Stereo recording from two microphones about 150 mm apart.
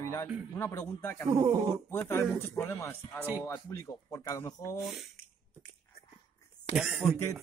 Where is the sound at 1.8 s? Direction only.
15° left (ahead or behind).